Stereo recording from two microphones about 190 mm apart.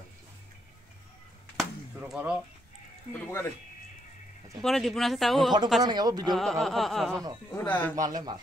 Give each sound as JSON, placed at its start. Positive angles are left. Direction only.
{"t": 1.6, "sound": "a sound", "side_deg": -5}
{"t": 3.1, "sound": "speech", "side_deg": 10}
{"t": 4.6, "sound": "speech", "side_deg": 0}
{"t": 5.9, "sound": "speech", "side_deg": -20}
{"t": 6.3, "sound": "speech", "side_deg": 0}
{"t": 7.9, "sound": "speech", "side_deg": -20}